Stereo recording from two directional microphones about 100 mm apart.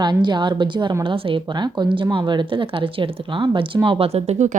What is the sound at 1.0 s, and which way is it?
Speech, 60° right (ahead or behind).